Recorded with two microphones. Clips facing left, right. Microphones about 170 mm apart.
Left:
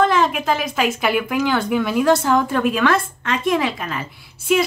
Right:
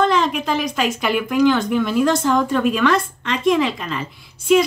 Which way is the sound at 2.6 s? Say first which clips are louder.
Right 1 dB; 50° left (ahead or behind).